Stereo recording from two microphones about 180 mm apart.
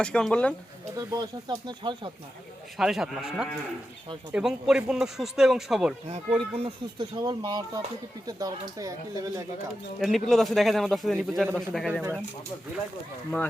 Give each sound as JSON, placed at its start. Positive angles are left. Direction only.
{"t": 0.0, "sound": "speech", "side_deg": 5}
{"t": 0.9, "sound": "speech", "side_deg": -20}
{"t": 2.7, "sound": "speech", "side_deg": 0}
{"t": 6.1, "sound": "speech", "side_deg": -35}
{"t": 10.0, "sound": "speech", "side_deg": 0}